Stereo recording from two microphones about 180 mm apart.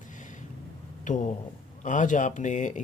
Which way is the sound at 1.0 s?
45° left (ahead or behind).